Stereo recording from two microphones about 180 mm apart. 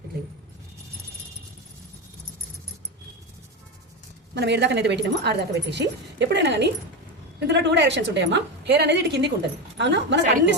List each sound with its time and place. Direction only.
4.4 s speech: 70° right (ahead or behind)